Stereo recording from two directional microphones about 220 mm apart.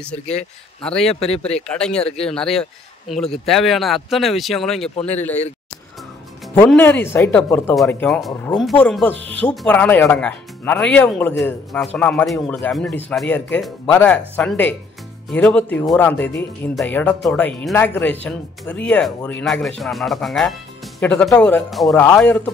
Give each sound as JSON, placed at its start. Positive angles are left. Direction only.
{"t": 1.0, "sound": "speech", "side_deg": 30}
{"t": 1.7, "sound": "speech", "side_deg": 5}
{"t": 4.9, "sound": "speech", "side_deg": 30}
{"t": 6.5, "sound": "speech", "side_deg": 10}